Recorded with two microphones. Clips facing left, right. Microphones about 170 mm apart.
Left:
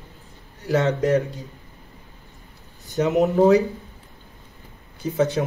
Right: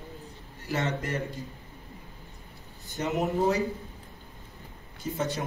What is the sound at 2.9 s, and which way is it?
Speech, 70° left (ahead or behind).